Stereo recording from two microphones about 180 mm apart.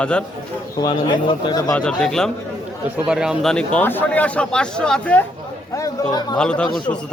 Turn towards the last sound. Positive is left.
turn(degrees=5)  # may be behind; listen again after turning